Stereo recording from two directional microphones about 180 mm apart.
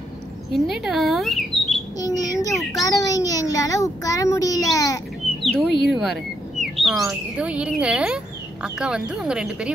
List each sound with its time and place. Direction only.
0.5 s speech: centre (ahead or behind)
2.0 s child singing: 20° left (ahead or behind)
2.8 s a child's voice: 20° left (ahead or behind)
5.4 s bird: centre (ahead or behind)
5.9 s speech: centre (ahead or behind)